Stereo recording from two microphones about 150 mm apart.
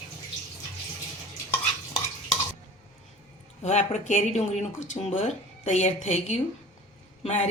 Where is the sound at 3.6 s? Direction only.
50° left (ahead or behind).